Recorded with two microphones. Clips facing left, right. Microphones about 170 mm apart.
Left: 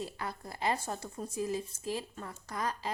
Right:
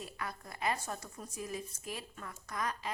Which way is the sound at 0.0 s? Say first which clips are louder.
Left 4 dB; 30° left (ahead or behind).